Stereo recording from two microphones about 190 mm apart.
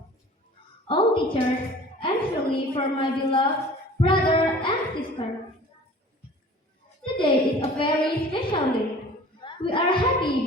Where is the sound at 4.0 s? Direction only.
25° left (ahead or behind).